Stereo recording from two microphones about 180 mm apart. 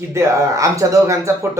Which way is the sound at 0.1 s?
15° right (ahead or behind).